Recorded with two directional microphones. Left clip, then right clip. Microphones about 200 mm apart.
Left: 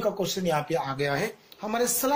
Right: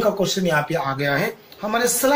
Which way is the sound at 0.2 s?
50° left (ahead or behind).